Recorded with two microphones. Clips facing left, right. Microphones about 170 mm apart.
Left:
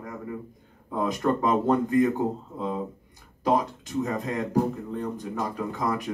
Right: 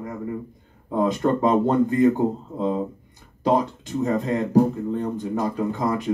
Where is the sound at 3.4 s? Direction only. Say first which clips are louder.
Right 3 dB; 25° right (ahead or behind).